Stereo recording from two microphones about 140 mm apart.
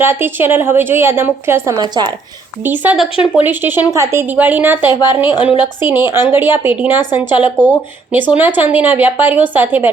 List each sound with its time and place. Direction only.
0.0 s speech: 15° right (ahead or behind)
2.6 s speech: 10° right (ahead or behind)
4.9 s a woman's voice: 30° left (ahead or behind)
5.8 s speech: 15° right (ahead or behind)